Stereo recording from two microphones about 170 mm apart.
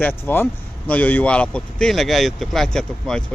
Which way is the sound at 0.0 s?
10° left (ahead or behind).